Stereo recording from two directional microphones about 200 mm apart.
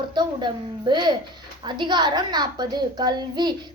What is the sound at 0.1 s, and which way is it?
A child's voice, 20° right (ahead or behind).